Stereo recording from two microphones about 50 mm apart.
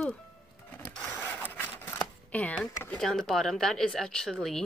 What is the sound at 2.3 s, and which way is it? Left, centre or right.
Speech, left.